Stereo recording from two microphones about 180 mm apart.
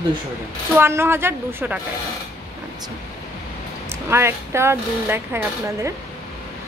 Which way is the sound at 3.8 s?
15° right (ahead or behind).